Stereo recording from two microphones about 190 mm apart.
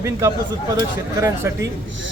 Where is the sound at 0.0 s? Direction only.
15° right (ahead or behind).